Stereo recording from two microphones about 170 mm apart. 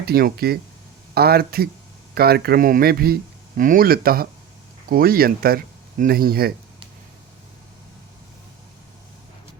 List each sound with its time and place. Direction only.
0.0 s speech: 65° right (ahead or behind)